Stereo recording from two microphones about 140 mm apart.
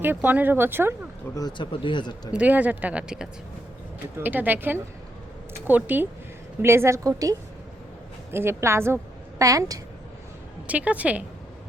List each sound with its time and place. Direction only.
0.0 s speech: 15° right (ahead or behind)
1.4 s speech: 30° left (ahead or behind)
2.3 s a woman's voice: 10° right (ahead or behind); by 9.8 s 25° right (ahead or behind)
10.7 s speech: 10° right (ahead or behind)